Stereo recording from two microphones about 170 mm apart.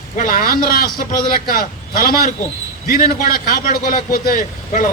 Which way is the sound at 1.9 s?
60° left (ahead or behind).